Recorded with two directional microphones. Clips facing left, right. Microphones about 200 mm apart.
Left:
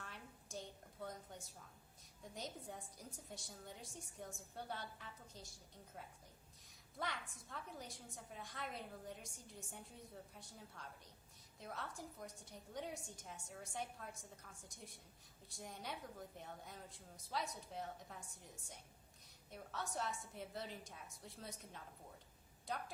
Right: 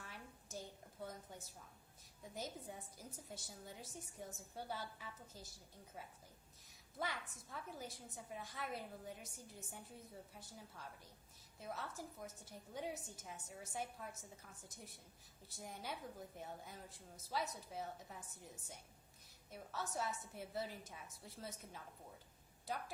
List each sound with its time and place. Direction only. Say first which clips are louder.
0.0 s a sound: even; 5° right (ahead or behind)
2.3 s a woman's voice: right 1 dB; centre (ahead or behind)
7.0 s a woman's voice: right 1 dB; 5° right (ahead or behind)
15.4 s a woman's voice: right 1 dB; centre (ahead or behind)